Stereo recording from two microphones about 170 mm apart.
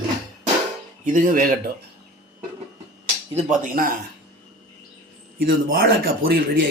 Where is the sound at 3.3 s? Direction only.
50° right (ahead or behind).